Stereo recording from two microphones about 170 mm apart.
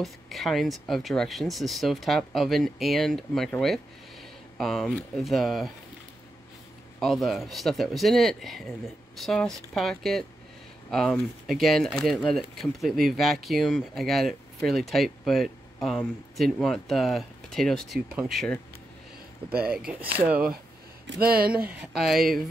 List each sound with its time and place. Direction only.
0.0 s speech: centre (ahead or behind)
7.0 s speech: centre (ahead or behind)
19.5 s speech: 60° right (ahead or behind)
20.2 s speech: 10° right (ahead or behind)
21.1 s speech: 65° right (ahead or behind)
21.6 s speech: centre (ahead or behind)